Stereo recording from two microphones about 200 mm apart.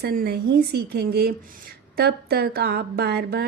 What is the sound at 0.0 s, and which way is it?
Speech, 50° right (ahead or behind).